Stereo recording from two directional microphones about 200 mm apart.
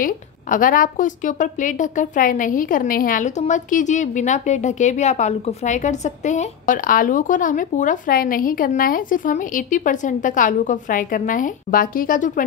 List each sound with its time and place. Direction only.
0.0 s a woman's voice: 45° left (ahead or behind)